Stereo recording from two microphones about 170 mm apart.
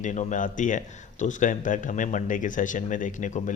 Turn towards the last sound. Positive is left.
turn(degrees=50)  # may be behind; listen again after turning